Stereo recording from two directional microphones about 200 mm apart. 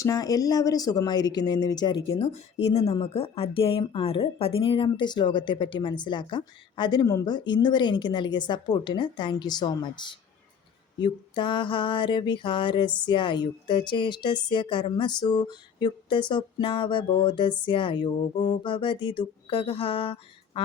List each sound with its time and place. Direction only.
0.0 s speech: 20° left (ahead or behind)